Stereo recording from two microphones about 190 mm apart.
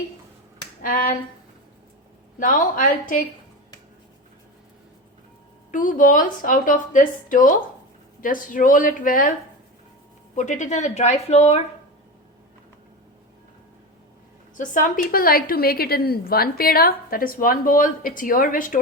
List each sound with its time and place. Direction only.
0.8 s a woman's voice: 45° left (ahead or behind)
2.4 s a woman's voice: 45° left (ahead or behind)
5.7 s a woman's voice: 45° left (ahead or behind)
10.3 s speech: 40° left (ahead or behind)
14.6 s a woman's voice: 45° left (ahead or behind)